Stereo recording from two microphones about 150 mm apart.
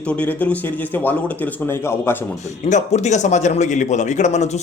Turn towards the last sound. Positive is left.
turn(degrees=50)  # may be behind; listen again after turning